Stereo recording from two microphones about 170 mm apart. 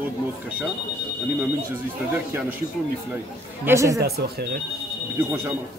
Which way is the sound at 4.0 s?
70° right (ahead or behind).